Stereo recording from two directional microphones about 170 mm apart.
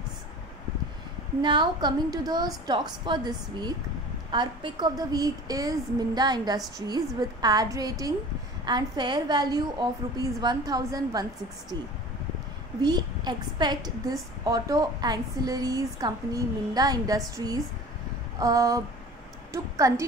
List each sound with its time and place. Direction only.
1.4 s a woman's voice: 25° right (ahead or behind)